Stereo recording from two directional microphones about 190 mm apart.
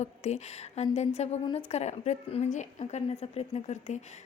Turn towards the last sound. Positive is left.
turn(degrees=35)  # may be behind; listen again after turning